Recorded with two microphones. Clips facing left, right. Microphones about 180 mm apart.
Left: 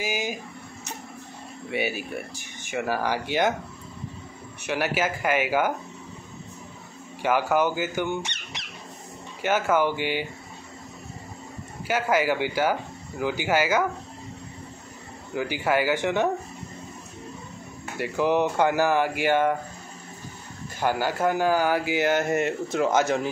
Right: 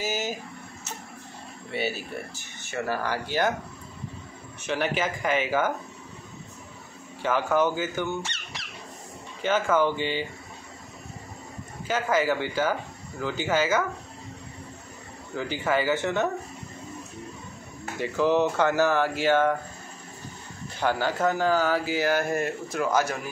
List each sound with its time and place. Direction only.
0.0 s a sound: 15° left (ahead or behind)
1.7 s speech: 15° left (ahead or behind)
4.6 s speech: 10° left (ahead or behind)
7.2 s speech: 10° left (ahead or behind)
11.9 s speech: 10° left (ahead or behind)
15.3 s speech: 10° left (ahead or behind)
17.9 s speech: 10° left (ahead or behind)
20.8 s speech: 10° left (ahead or behind)